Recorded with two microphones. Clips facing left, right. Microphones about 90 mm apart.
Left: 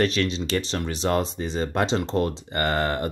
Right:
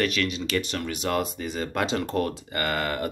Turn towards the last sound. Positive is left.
turn(degrees=30)  # may be behind; listen again after turning